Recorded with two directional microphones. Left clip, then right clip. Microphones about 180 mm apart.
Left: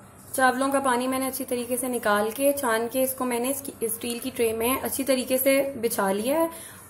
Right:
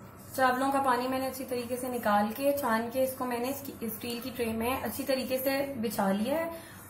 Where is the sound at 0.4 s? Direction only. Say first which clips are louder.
Left 4 dB; 35° left (ahead or behind).